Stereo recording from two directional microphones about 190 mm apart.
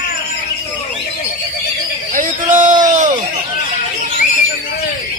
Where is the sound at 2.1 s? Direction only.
45° right (ahead or behind).